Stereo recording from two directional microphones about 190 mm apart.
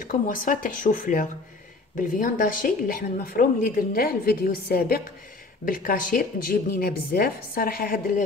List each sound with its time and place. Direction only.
0.0 s a woman's voice: 45° left (ahead or behind)